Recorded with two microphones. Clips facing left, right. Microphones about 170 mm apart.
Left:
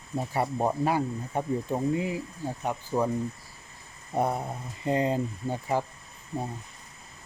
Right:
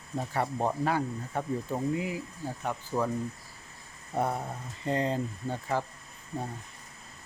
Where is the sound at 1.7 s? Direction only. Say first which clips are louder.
Left 3 dB; 25° left (ahead or behind).